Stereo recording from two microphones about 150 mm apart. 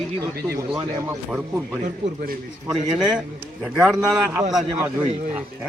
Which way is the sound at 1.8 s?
75° right (ahead or behind).